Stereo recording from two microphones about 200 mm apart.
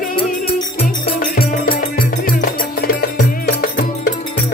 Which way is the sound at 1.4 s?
45° left (ahead or behind).